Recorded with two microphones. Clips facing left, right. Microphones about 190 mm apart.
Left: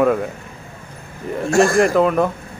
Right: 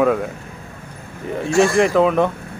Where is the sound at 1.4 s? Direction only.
45° left (ahead or behind).